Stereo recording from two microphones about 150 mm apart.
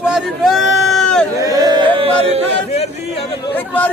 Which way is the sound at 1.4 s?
25° right (ahead or behind).